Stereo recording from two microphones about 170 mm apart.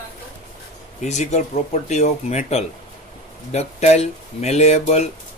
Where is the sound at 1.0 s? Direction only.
40° left (ahead or behind).